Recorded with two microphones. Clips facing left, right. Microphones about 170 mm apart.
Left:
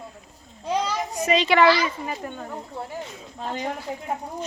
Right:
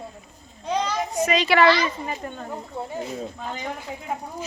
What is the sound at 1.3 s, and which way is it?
A woman's voice, 20° left (ahead or behind).